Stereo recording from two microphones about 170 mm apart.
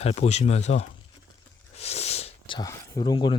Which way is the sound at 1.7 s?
40° left (ahead or behind).